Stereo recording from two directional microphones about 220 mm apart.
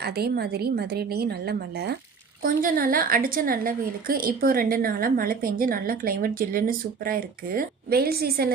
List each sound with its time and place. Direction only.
0.0 s a woman's voice: 45° right (ahead or behind)